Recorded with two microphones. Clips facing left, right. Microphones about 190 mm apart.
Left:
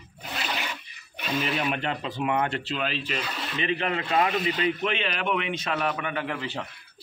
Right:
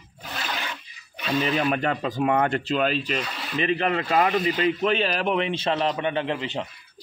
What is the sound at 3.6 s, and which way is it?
A man's voice, 35° right (ahead or behind).